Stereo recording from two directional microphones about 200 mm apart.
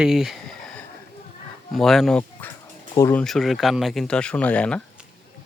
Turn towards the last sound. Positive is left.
turn(degrees=5)  # may be behind; listen again after turning